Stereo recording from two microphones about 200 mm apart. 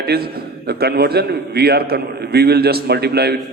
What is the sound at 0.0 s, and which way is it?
A man's voice, 50° right (ahead or behind).